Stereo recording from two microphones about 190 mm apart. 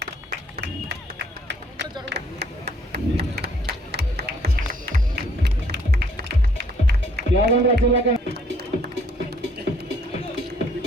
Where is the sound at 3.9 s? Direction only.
60° right (ahead or behind).